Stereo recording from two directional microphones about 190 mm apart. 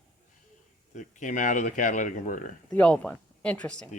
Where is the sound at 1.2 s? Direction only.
40° left (ahead or behind).